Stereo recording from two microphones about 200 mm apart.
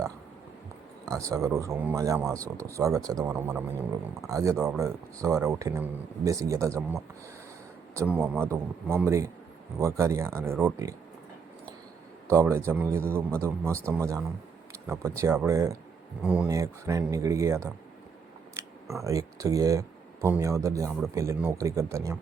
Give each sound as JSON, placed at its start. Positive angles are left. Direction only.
{"t": 1.3, "sound": "speech", "side_deg": -15}
{"t": 12.3, "sound": "speech", "side_deg": -15}
{"t": 18.6, "sound": "camera", "side_deg": -15}
{"t": 18.9, "sound": "speech", "side_deg": -15}